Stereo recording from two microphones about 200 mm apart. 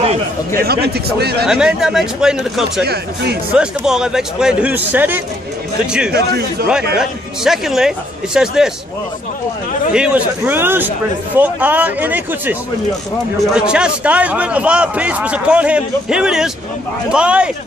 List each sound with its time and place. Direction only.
0.6 s a man's voice: 50° right (ahead or behind)
1.4 s a man's voice: 5° right (ahead or behind)
6.1 s a man's voice: 55° right (ahead or behind)
7.0 s a man's voice: centre (ahead or behind)
9.9 s speech: 5° right (ahead or behind)
13.6 s a man's voice: 5° right (ahead or behind)